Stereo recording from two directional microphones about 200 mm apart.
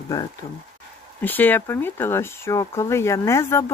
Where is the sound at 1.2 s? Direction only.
10° left (ahead or behind).